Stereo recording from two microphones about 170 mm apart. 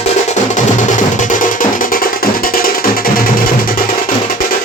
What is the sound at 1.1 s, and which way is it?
Music, 50° left (ahead or behind).